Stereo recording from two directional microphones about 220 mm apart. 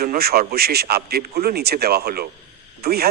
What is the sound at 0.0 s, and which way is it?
A man's voice, 45° right (ahead or behind).